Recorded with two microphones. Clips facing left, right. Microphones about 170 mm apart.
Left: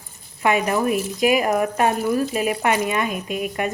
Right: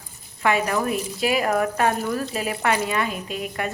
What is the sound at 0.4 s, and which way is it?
A woman's voice, 20° left (ahead or behind).